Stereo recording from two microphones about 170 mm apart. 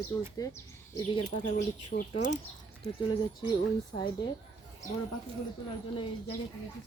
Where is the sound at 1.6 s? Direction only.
60° left (ahead or behind).